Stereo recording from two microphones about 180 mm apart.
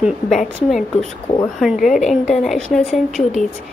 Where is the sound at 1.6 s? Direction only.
Centre (ahead or behind).